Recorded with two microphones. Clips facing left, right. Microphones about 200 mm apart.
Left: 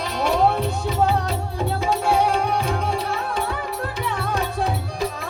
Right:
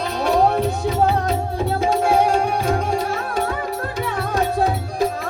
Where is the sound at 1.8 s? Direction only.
50° right (ahead or behind).